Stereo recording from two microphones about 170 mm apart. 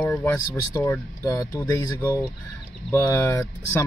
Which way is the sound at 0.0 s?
10° left (ahead or behind).